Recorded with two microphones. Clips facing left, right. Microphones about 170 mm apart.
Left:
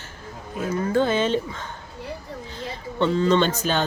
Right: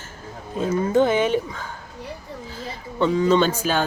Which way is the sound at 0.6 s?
20° right (ahead or behind).